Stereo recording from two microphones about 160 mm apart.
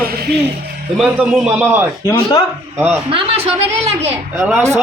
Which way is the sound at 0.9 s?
5° right (ahead or behind).